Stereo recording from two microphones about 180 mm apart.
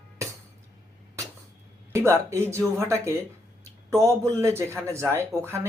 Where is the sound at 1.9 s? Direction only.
15° right (ahead or behind).